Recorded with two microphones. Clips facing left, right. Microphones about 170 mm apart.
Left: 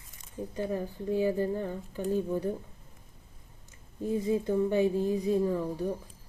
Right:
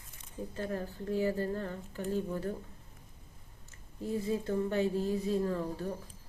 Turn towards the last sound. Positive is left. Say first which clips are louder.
# left 4 dB
turn(degrees=10)  # may be behind; listen again after turning